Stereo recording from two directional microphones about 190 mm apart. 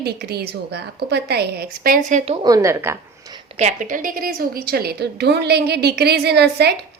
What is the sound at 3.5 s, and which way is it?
A woman's voice, 40° right (ahead or behind).